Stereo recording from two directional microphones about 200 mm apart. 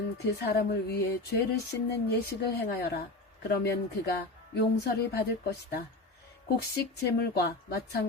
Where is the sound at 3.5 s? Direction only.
55° left (ahead or behind).